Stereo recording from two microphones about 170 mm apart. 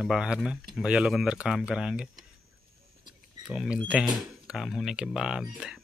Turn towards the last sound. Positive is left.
turn(degrees=-5)  # may be behind; listen again after turning